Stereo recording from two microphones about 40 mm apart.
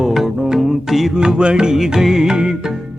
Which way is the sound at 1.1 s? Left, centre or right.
Centre.